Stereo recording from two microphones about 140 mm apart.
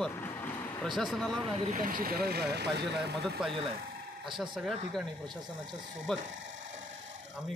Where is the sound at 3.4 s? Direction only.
5° right (ahead or behind).